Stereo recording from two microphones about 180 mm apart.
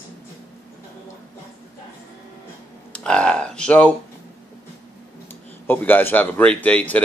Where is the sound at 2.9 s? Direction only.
5° left (ahead or behind).